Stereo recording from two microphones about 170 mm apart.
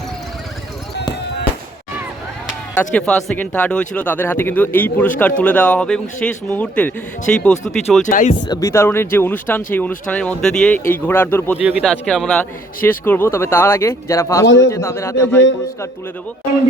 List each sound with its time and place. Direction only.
2.7 s speech: 5° left (ahead or behind)
8.0 s speech: 50° left (ahead or behind)
8.4 s speech: 15° left (ahead or behind)
14.4 s a man's voice: 90° left
14.7 s speech: 15° left (ahead or behind)